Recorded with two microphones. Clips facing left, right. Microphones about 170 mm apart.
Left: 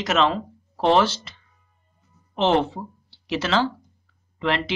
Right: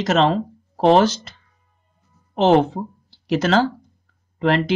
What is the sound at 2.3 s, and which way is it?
Speech, 40° right (ahead or behind).